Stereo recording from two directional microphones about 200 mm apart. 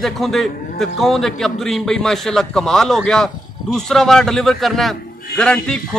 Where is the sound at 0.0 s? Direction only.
Centre (ahead or behind).